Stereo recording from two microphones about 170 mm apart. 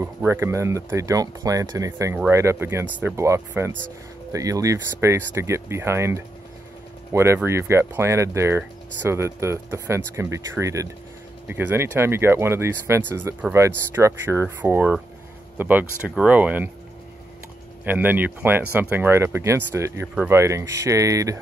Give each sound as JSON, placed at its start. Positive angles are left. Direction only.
{"t": 0.0, "sound": "speech", "side_deg": -15}
{"t": 17.8, "sound": "speech", "side_deg": -10}